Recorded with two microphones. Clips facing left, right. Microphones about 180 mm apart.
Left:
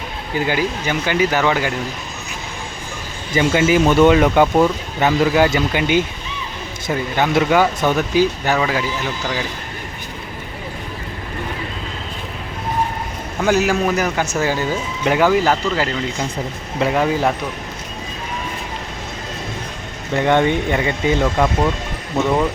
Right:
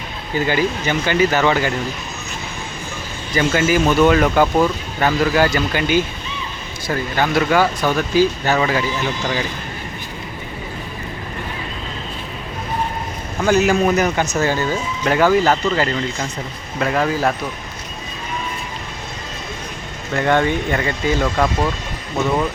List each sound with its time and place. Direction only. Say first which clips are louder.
0.3 s speech: right 1 dB; 10° left (ahead or behind)
3.3 s speech: left 2 dB; 20° left (ahead or behind)
8.5 s speech: right 2 dB; centre (ahead or behind)
13.4 s speech: right 1 dB; 5° left (ahead or behind)
16.8 s speech: left 1 dB; 15° left (ahead or behind)
20.1 s speech: left 1 dB; 20° left (ahead or behind)